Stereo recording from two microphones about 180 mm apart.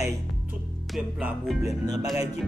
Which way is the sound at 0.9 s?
Centre (ahead or behind).